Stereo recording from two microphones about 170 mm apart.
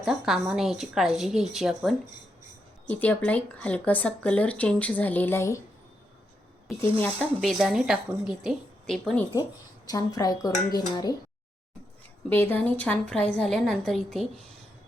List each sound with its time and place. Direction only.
0.0 s a woman's voice: centre (ahead or behind)
2.8 s speech: 10° left (ahead or behind)
6.8 s speech: 10° left (ahead or behind)
7.4 s a woman's voice: centre (ahead or behind)
9.8 s a woman's voice: 20° left (ahead or behind)
12.3 s a woman's voice: 10° left (ahead or behind)